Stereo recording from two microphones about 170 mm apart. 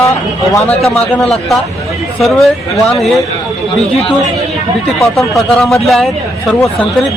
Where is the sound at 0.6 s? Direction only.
35° left (ahead or behind).